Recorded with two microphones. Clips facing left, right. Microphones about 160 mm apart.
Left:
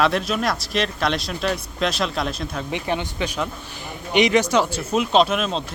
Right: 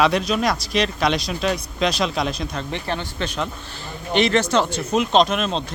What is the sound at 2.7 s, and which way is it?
Speech, 15° left (ahead or behind).